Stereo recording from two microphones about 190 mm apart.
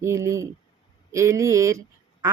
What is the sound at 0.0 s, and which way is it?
Speech, 15° right (ahead or behind).